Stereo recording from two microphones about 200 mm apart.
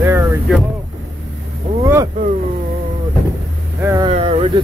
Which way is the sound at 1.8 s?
15° right (ahead or behind).